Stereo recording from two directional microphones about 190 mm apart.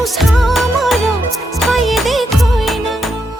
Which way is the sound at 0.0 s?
Centre (ahead or behind).